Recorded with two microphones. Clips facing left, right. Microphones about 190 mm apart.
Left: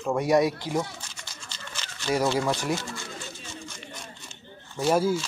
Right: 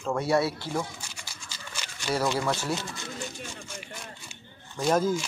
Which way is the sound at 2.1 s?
15° left (ahead or behind).